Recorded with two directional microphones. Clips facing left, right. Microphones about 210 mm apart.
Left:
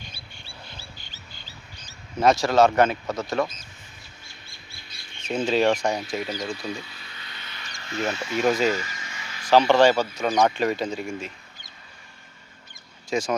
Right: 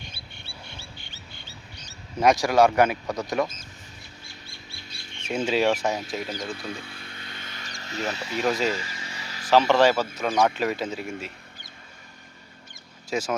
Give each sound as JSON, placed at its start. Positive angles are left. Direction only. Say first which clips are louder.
{"t": 2.2, "sound": "speech", "louder": "left 1 dB", "side_deg": -15}
{"t": 5.5, "sound": "speech", "louder": "left 2 dB", "side_deg": -5}
{"t": 6.7, "sound": "a sound", "louder": "even", "side_deg": -50}
{"t": 8.4, "sound": "speech", "louder": "left 3 dB", "side_deg": 0}
{"t": 8.7, "sound": "vehicle", "louder": "left 3 dB", "side_deg": -30}
{"t": 9.5, "sound": "speech", "louder": "left 2 dB", "side_deg": 0}
{"t": 13.1, "sound": "speech", "louder": "left 2 dB", "side_deg": -5}